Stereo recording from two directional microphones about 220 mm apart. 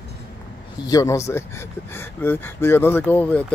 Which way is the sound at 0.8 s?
15° left (ahead or behind).